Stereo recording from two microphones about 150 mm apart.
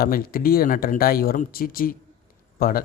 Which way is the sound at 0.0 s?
75° left (ahead or behind).